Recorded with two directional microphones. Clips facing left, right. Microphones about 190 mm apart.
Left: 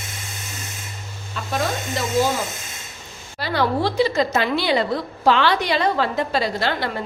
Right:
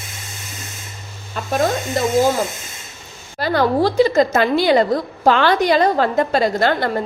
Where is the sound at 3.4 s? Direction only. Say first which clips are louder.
Right 5 dB; 45° right (ahead or behind).